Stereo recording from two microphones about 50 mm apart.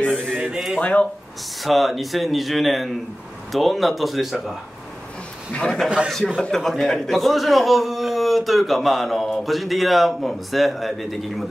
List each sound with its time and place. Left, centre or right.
0.0 s a sound: centre
0.5 s speech: centre
0.7 s speech: left
1.6 s a man's voice: centre
6.0 s a man's voice: centre